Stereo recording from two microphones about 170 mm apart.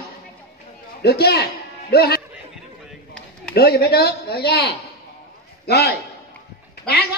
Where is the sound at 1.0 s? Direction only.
70° left (ahead or behind).